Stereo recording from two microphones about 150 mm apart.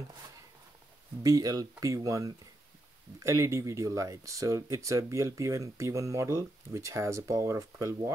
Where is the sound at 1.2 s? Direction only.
25° right (ahead or behind).